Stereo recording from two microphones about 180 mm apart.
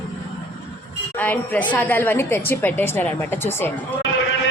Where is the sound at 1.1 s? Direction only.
10° left (ahead or behind).